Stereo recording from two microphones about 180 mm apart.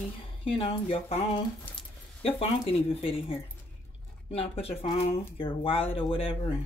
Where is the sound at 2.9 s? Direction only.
30° left (ahead or behind).